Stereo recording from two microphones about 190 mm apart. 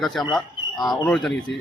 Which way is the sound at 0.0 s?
Centre (ahead or behind).